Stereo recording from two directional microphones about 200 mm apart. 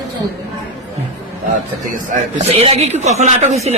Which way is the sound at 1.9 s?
40° right (ahead or behind).